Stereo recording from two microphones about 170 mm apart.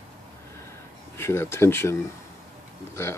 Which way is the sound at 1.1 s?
15° left (ahead or behind).